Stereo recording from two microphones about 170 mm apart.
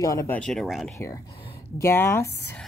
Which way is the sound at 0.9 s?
15° left (ahead or behind).